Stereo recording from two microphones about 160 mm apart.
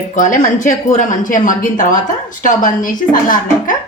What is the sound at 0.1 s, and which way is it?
A woman's voice, 50° left (ahead or behind).